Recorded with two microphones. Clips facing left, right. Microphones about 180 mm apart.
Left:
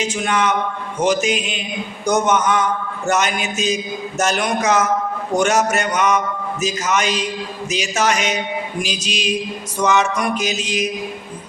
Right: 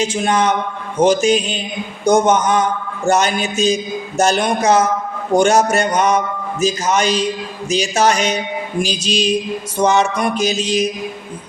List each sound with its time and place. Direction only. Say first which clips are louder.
0.0 s a man's voice: right 3 dB; 30° right (ahead or behind)